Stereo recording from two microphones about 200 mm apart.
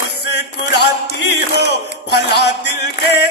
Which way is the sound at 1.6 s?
55° left (ahead or behind).